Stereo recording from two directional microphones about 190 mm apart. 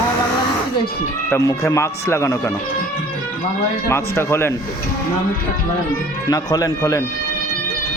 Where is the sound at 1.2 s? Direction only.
15° left (ahead or behind).